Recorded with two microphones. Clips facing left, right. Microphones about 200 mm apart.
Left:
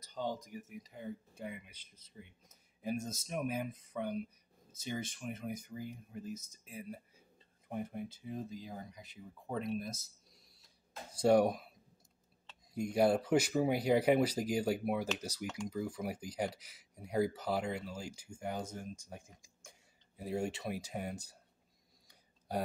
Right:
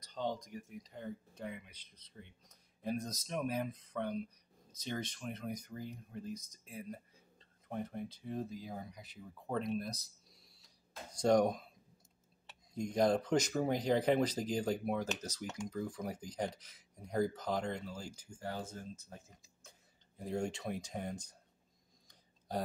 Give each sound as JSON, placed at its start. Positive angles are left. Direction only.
{"t": 0.0, "sound": "speech", "side_deg": 5}
{"t": 11.1, "sound": "speech", "side_deg": 5}
{"t": 12.7, "sound": "speech", "side_deg": 10}